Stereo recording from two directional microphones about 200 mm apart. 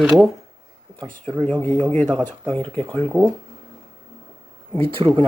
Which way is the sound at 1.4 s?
10° left (ahead or behind).